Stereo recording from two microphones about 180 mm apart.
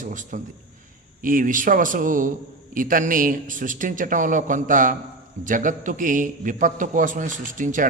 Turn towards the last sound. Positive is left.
turn(degrees=-45)  # may be behind; listen again after turning